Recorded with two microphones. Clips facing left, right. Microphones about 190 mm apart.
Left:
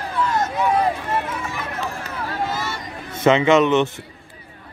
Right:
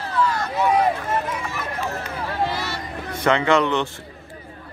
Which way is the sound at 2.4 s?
50° left (ahead or behind).